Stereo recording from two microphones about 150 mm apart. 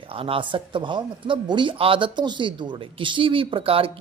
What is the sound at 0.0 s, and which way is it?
Speech, 35° right (ahead or behind).